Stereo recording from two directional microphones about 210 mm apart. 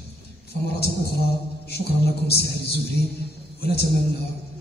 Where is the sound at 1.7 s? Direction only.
50° left (ahead or behind).